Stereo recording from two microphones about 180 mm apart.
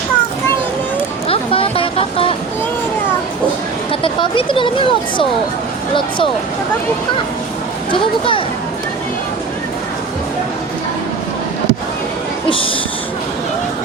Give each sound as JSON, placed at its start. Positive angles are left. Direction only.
{"t": 1.3, "sound": "a sound", "side_deg": 30}
{"t": 4.0, "sound": "speech", "side_deg": 25}
{"t": 12.5, "sound": "speech", "side_deg": 30}